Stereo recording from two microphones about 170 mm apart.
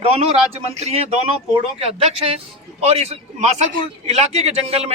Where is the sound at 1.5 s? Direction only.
35° right (ahead or behind).